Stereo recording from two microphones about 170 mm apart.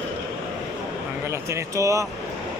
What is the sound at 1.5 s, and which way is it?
Speech, 20° right (ahead or behind).